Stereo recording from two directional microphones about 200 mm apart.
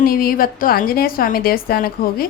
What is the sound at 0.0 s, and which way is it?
A woman's voice, 45° left (ahead or behind).